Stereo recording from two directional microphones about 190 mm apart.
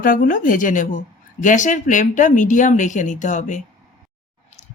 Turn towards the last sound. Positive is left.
turn(degrees=40)  # may be behind; listen again after turning